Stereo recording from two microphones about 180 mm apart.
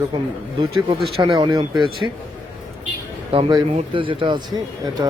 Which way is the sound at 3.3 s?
25° right (ahead or behind).